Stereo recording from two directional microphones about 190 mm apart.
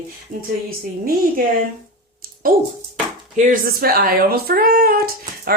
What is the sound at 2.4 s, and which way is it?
Speech, 50° right (ahead or behind).